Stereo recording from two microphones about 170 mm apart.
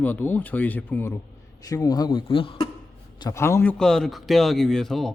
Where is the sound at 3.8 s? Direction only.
5° left (ahead or behind).